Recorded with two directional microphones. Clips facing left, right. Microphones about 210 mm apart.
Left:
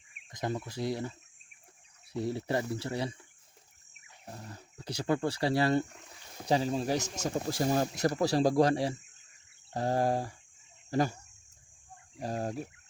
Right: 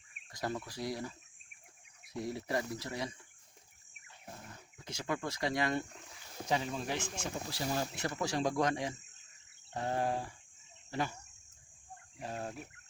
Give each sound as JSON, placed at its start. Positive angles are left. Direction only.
{"t": 0.3, "sound": "speech", "side_deg": 20}
{"t": 2.1, "sound": "speech", "side_deg": 30}
{"t": 4.4, "sound": "speech", "side_deg": 35}
{"t": 12.2, "sound": "speech", "side_deg": 40}